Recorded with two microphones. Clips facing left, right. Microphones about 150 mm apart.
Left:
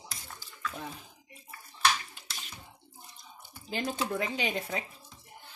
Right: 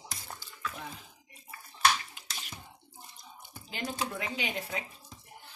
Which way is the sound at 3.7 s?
35° left (ahead or behind).